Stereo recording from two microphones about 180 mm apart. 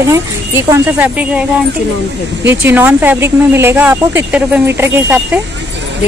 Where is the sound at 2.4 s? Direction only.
10° right (ahead or behind).